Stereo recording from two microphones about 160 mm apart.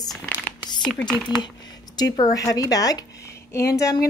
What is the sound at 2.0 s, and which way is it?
Speech, 20° left (ahead or behind).